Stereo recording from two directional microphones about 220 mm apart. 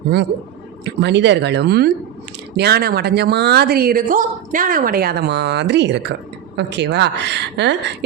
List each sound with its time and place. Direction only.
0.9 s a woman's voice: 50° right (ahead or behind)